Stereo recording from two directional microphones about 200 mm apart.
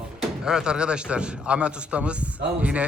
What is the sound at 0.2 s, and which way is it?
A man's voice, 5° right (ahead or behind).